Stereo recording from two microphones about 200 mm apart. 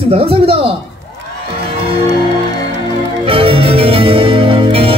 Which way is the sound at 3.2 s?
25° right (ahead or behind).